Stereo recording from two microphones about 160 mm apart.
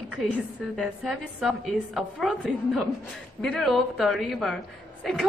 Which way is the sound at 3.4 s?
Centre (ahead or behind).